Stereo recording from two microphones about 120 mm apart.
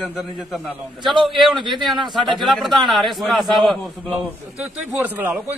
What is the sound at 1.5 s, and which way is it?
Speech, 40° right (ahead or behind).